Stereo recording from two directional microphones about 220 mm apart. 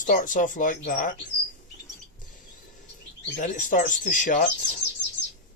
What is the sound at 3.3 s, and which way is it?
Speech, 35° left (ahead or behind).